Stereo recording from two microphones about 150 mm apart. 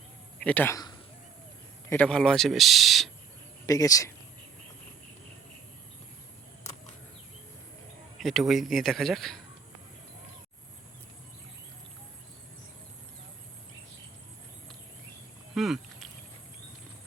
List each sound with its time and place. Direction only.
0.3 s speech: 10° left (ahead or behind)
1.9 s a man's voice: 10° left (ahead or behind)
3.7 s speech: 25° left (ahead or behind)
8.2 s a man's voice: centre (ahead or behind)
15.5 s rowboat: centre (ahead or behind)